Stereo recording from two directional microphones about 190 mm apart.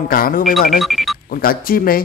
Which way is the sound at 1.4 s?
50° left (ahead or behind).